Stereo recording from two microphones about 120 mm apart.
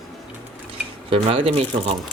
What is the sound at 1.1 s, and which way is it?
Speech, 55° right (ahead or behind).